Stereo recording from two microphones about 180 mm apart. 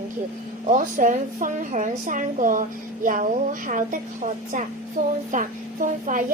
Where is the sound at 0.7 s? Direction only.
45° right (ahead or behind).